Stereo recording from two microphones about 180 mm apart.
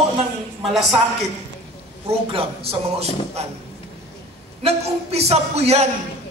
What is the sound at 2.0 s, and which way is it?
A man's voice, 35° right (ahead or behind).